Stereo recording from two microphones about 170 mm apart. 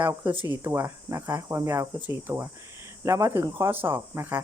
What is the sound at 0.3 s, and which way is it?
Speech, 10° right (ahead or behind).